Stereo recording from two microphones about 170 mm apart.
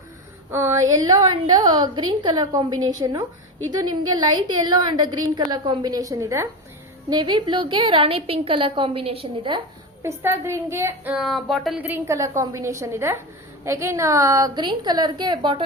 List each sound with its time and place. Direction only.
0.5 s a woman's voice: 15° right (ahead or behind)
7.1 s a woman's voice: 30° right (ahead or behind)
10.0 s a woman's voice: 15° right (ahead or behind)